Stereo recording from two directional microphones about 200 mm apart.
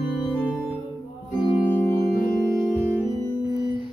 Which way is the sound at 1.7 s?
10° left (ahead or behind).